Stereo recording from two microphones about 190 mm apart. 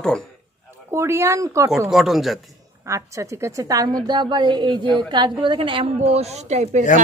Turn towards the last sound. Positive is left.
turn(degrees=-40)  # may be behind; listen again after turning